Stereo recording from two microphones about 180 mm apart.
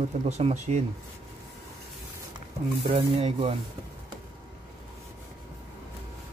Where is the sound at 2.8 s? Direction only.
35° right (ahead or behind).